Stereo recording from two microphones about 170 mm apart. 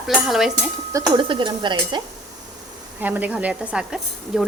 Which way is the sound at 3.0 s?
10° right (ahead or behind).